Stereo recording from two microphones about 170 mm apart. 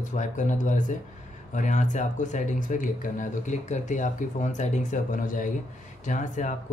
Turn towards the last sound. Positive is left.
turn(degrees=50)  # may be behind; listen again after turning